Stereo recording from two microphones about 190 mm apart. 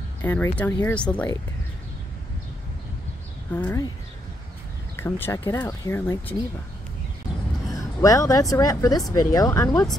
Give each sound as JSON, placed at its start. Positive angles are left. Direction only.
{"t": 0.2, "sound": "speech", "side_deg": 10}
{"t": 3.5, "sound": "speech", "side_deg": 10}
{"t": 4.9, "sound": "speech", "side_deg": 10}
{"t": 8.0, "sound": "speech", "side_deg": 15}